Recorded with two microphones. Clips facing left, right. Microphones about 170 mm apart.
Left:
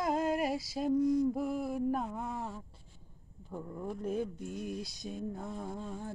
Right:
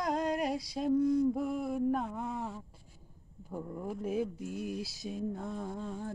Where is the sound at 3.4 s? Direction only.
10° right (ahead or behind).